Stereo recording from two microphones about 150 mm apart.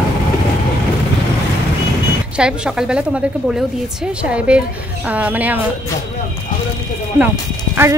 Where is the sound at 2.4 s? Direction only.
5° right (ahead or behind).